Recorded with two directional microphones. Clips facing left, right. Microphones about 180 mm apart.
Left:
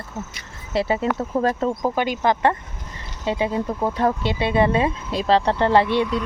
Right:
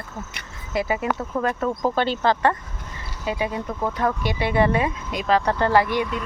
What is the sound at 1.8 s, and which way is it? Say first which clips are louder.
Speech: right 2 dB; 10° left (ahead or behind).